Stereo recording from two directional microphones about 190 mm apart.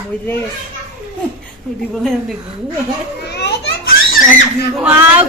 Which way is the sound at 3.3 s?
55° left (ahead or behind).